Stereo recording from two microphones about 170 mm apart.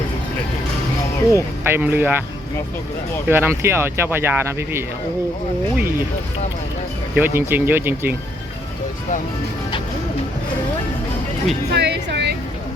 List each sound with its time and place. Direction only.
1.3 s speech: 15° right (ahead or behind)
3.2 s speech: 15° right (ahead or behind)
7.2 s speech: 15° right (ahead or behind)
11.7 s music: 90° right